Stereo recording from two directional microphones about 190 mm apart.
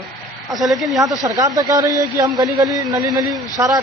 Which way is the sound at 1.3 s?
20° right (ahead or behind).